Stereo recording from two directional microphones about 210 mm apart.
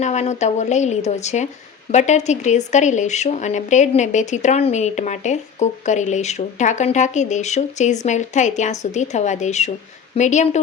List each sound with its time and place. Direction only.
0.0 s speech: 35° left (ahead or behind)